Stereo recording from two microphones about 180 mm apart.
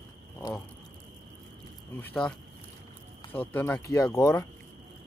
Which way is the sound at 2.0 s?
10° left (ahead or behind).